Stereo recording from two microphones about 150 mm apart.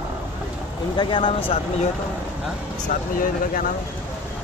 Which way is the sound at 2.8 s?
65° left (ahead or behind).